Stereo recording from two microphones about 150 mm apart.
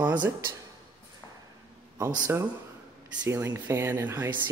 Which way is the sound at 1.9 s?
25° right (ahead or behind).